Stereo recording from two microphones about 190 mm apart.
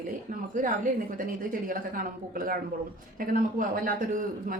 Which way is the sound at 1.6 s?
45° right (ahead or behind).